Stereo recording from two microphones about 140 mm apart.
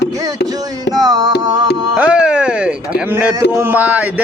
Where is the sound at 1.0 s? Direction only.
30° right (ahead or behind).